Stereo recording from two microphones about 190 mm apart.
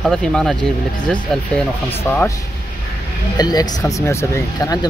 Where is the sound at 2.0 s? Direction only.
15° left (ahead or behind).